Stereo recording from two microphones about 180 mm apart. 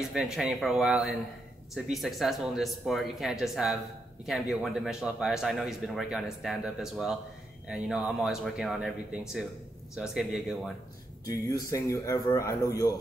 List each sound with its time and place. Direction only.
0.1 s a man's voice: centre (ahead or behind)
11.2 s a man's voice: 20° left (ahead or behind)